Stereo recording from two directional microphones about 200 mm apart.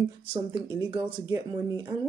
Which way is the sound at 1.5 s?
20° right (ahead or behind).